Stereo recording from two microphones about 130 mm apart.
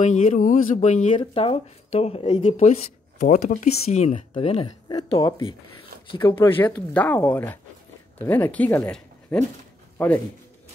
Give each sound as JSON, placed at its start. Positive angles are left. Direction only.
{"t": 0.0, "sound": "speech", "side_deg": 65}
{"t": 1.1, "sound": "speech", "side_deg": 45}
{"t": 2.5, "sound": "speech", "side_deg": 65}
{"t": 4.4, "sound": "speech", "side_deg": 50}
{"t": 5.1, "sound": "speech", "side_deg": 35}
{"t": 6.9, "sound": "speech", "side_deg": 10}